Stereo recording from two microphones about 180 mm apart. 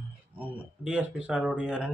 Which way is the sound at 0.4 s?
5° right (ahead or behind).